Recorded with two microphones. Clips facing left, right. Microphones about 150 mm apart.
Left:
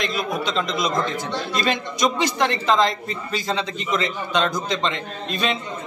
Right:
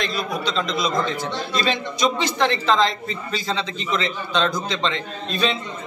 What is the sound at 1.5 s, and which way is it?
Speech, 50° left (ahead or behind).